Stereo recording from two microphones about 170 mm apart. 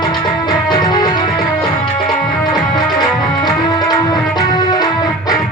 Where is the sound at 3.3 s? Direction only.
25° left (ahead or behind).